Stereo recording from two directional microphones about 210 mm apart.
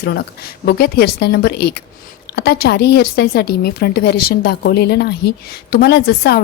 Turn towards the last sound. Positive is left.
turn(degrees=50)  # may be behind; listen again after turning